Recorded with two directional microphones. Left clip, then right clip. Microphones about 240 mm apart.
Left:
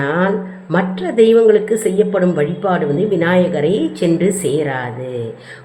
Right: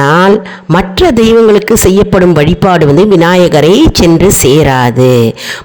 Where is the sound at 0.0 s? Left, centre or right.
Right.